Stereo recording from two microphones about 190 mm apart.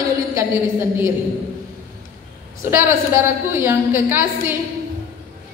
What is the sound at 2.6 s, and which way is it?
Speech, 15° right (ahead or behind).